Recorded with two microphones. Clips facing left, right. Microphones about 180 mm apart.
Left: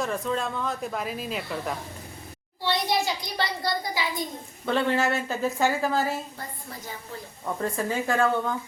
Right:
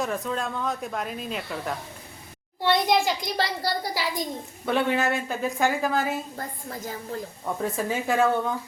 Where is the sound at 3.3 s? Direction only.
35° right (ahead or behind).